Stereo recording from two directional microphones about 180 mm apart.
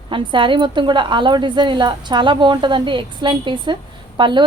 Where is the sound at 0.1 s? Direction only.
25° right (ahead or behind).